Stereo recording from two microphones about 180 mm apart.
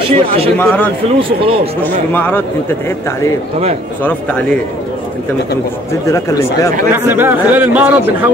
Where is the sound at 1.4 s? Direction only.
30° right (ahead or behind).